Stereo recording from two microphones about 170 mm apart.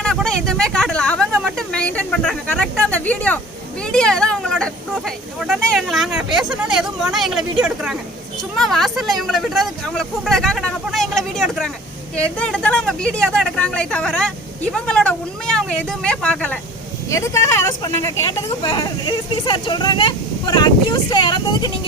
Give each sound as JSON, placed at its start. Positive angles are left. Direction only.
{"t": 0.0, "sound": "a sound", "side_deg": 5}
{"t": 3.9, "sound": "speech", "side_deg": 5}
{"t": 17.1, "sound": "speech", "side_deg": 15}